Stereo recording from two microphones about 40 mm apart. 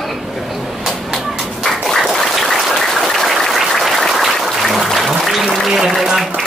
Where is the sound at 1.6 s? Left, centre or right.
Centre.